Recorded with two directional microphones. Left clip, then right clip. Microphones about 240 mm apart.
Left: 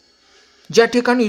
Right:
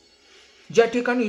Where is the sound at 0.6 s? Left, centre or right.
Left.